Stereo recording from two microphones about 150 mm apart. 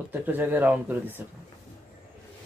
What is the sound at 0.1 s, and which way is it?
Speech, 10° right (ahead or behind).